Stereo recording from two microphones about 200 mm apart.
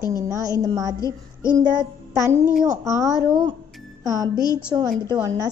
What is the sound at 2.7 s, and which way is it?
A woman's voice, 15° right (ahead or behind).